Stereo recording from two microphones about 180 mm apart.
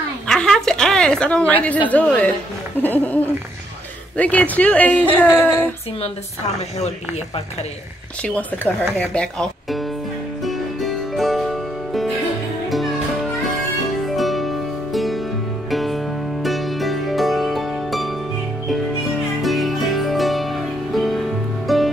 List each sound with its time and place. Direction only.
0.3 s a woman's voice: 5° left (ahead or behind)
4.2 s speech: 10° left (ahead or behind)
8.9 s speech: 5° left (ahead or behind)
10.4 s music: centre (ahead or behind)